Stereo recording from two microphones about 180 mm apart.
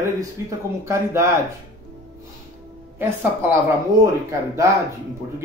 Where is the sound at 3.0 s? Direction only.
10° right (ahead or behind).